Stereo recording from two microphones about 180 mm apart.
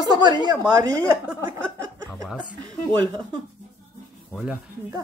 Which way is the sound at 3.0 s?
25° right (ahead or behind).